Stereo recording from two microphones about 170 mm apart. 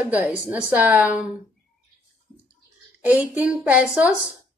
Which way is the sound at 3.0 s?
10° right (ahead or behind).